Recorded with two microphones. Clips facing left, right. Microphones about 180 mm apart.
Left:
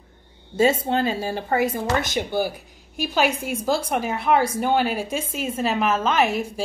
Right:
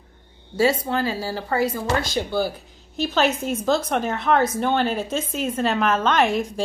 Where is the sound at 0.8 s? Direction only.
25° left (ahead or behind).